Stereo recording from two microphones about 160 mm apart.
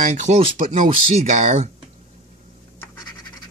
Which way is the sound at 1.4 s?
50° right (ahead or behind).